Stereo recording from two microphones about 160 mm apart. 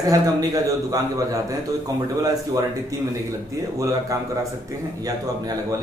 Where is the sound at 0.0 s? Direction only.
25° right (ahead or behind).